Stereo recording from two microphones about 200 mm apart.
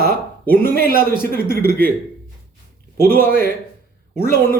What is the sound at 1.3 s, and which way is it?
Speech, 10° left (ahead or behind).